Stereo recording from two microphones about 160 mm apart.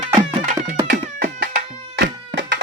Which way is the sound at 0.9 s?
65° right (ahead or behind).